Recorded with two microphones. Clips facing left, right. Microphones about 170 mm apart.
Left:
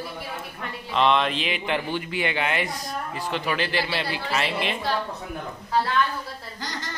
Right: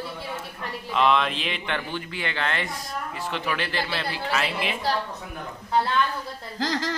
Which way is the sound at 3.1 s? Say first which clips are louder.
Left 2 dB; centre (ahead or behind).